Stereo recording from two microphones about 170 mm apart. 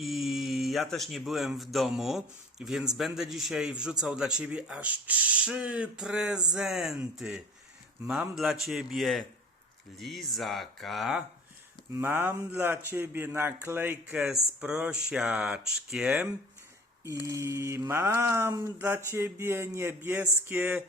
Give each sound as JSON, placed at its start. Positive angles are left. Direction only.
{"t": 0.0, "sound": "speech", "side_deg": 0}
{"t": 11.9, "sound": "mantra", "side_deg": -15}
{"t": 14.6, "sound": "speech", "side_deg": -5}
{"t": 17.0, "sound": "mantra", "side_deg": -15}